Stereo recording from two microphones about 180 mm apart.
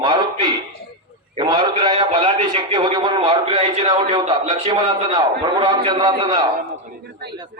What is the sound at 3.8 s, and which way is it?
A man's voice, 25° right (ahead or behind).